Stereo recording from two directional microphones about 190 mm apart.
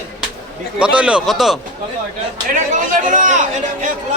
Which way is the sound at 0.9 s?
5° right (ahead or behind).